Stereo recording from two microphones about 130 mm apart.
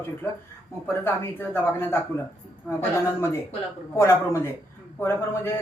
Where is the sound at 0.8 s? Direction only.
15° left (ahead or behind).